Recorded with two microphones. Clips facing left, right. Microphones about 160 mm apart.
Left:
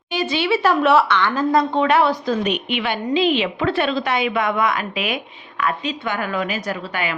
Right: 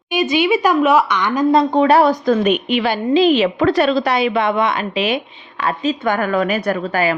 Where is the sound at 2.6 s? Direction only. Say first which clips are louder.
Right 5 dB; 35° right (ahead or behind).